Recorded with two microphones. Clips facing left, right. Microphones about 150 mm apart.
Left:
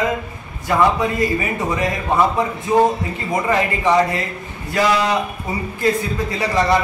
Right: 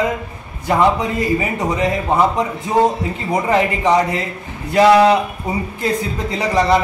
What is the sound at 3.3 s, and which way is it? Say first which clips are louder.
A man's voice: right 2 dB; 20° right (ahead or behind).